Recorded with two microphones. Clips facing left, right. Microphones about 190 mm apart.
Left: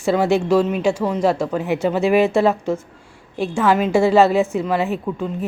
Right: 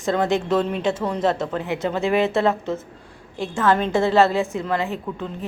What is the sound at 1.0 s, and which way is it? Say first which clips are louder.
A woman's voice: left 3 dB; 5° left (ahead or behind).